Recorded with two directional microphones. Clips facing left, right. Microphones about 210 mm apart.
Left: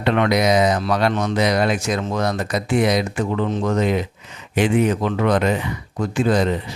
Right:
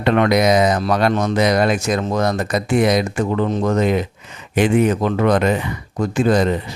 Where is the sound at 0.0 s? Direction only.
45° right (ahead or behind).